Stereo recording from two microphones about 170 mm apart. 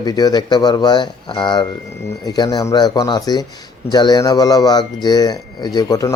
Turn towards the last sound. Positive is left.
turn(degrees=20)  # may be behind; listen again after turning